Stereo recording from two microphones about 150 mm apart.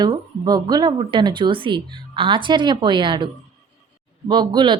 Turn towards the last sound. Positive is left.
turn(degrees=-30)  # may be behind; listen again after turning